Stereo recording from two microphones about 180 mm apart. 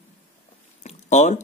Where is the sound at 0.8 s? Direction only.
40° left (ahead or behind).